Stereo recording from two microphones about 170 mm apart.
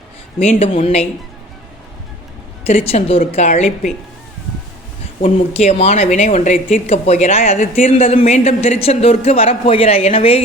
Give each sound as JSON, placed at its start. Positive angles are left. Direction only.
{"t": 0.6, "sound": "speech", "side_deg": 35}
{"t": 2.6, "sound": "speech", "side_deg": 40}
{"t": 5.2, "sound": "speech", "side_deg": 40}